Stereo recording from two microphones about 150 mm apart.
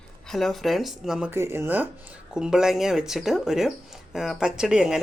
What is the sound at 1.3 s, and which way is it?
Speech, 15° right (ahead or behind).